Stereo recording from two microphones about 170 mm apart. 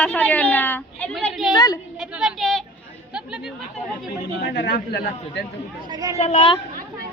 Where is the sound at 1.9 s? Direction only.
5° right (ahead or behind).